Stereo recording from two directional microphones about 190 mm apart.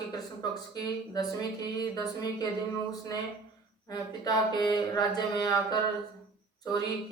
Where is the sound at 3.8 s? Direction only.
20° left (ahead or behind).